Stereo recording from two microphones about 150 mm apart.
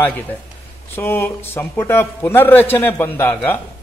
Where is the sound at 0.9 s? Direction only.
15° left (ahead or behind).